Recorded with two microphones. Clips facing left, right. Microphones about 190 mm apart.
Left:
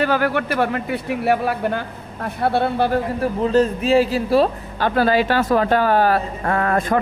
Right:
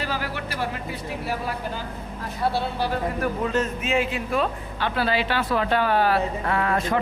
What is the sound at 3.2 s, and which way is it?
A man's voice, 30° left (ahead or behind).